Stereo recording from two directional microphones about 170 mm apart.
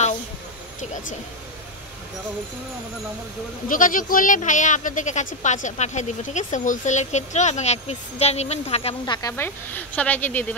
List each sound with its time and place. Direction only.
3.6 s speech: 50° left (ahead or behind)
9.0 s speech: 25° left (ahead or behind)
9.3 s speech: 10° left (ahead or behind)